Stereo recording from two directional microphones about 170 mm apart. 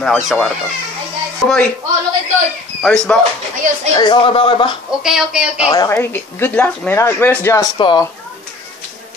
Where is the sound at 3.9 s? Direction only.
25° left (ahead or behind).